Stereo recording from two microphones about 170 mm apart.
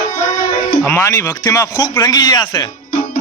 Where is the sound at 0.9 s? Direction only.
15° left (ahead or behind).